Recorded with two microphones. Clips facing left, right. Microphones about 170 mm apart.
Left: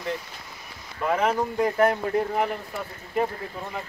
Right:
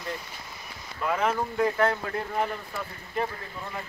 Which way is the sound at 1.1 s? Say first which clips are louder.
Left 3 dB; 15° left (ahead or behind).